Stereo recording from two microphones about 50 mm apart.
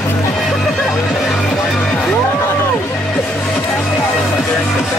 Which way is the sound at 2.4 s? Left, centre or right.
Left.